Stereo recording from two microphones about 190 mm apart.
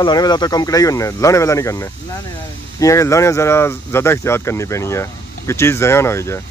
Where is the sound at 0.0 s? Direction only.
20° left (ahead or behind).